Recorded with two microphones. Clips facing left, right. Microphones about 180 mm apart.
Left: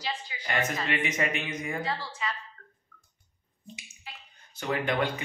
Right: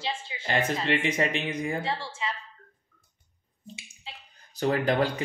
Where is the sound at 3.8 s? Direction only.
30° right (ahead or behind).